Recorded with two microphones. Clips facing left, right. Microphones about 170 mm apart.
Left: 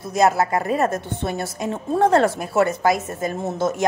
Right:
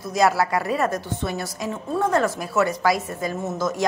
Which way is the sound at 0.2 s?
25° left (ahead or behind).